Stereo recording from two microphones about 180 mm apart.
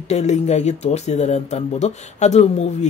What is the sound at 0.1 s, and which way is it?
Speech, 40° left (ahead or behind).